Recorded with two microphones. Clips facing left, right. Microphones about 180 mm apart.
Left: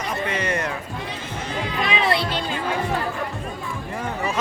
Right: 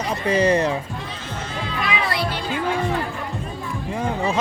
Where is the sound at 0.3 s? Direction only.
35° right (ahead or behind).